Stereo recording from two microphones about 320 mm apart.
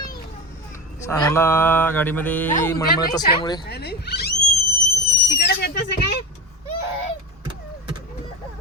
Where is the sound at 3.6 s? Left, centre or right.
Left.